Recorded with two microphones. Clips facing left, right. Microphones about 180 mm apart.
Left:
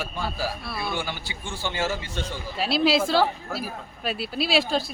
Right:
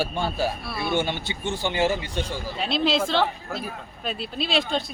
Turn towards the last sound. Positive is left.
turn(degrees=5)  # may be behind; listen again after turning